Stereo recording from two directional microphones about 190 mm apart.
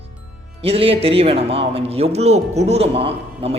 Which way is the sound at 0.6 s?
30° right (ahead or behind).